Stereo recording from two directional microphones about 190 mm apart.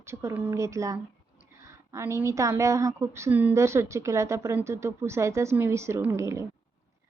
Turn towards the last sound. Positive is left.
turn(degrees=-15)  # may be behind; listen again after turning